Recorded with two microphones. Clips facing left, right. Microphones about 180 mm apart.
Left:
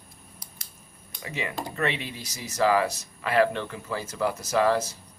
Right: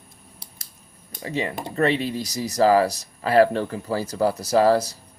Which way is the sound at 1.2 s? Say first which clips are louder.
Right 5 dB; 35° right (ahead or behind).